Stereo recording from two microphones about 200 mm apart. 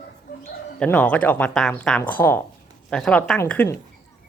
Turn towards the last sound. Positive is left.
turn(degrees=10)  # may be behind; listen again after turning